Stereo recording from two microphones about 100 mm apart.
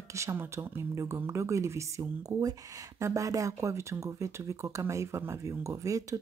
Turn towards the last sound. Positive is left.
turn(degrees=-35)  # may be behind; listen again after turning